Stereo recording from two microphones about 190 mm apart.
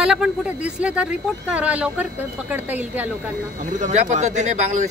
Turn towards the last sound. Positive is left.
turn(degrees=-40)  # may be behind; listen again after turning